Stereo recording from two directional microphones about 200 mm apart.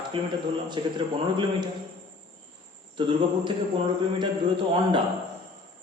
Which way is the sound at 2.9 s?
25° right (ahead or behind).